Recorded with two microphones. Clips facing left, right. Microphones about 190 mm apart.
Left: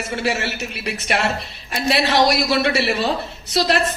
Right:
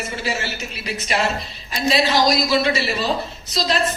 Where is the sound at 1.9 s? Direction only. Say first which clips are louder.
Left 1 dB; 65° left (ahead or behind).